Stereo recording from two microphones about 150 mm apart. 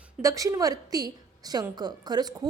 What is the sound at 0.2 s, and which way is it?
A woman's voice, 20° right (ahead or behind).